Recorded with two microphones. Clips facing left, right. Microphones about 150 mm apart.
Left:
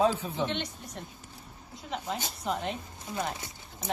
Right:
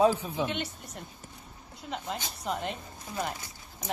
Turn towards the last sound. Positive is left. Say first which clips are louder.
# even
turn(degrees=0)  # may be behind; listen again after turning